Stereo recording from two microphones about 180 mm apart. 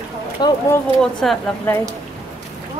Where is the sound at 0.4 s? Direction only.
25° left (ahead or behind).